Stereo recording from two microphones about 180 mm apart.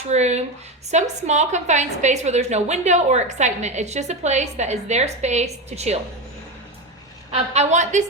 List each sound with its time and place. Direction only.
0.1 s a woman's voice: 40° right (ahead or behind)
7.3 s a woman's voice: 40° right (ahead or behind)